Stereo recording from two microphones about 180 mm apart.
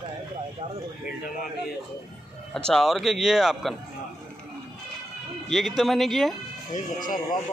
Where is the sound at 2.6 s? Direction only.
Centre (ahead or behind).